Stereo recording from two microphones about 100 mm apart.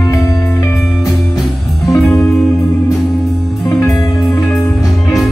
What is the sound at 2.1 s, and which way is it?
Music, centre (ahead or behind).